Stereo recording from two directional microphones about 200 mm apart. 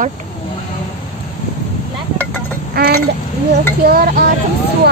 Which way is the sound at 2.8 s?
50° right (ahead or behind).